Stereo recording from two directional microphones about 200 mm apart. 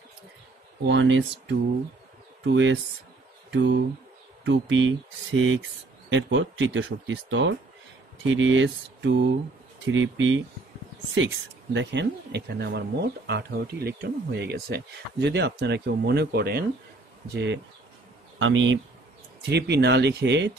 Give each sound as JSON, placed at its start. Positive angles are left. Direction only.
{"t": 0.8, "sound": "speech", "side_deg": -65}
{"t": 11.7, "sound": "speech", "side_deg": -60}
{"t": 18.4, "sound": "speech", "side_deg": -70}
{"t": 19.5, "sound": "speech", "side_deg": -55}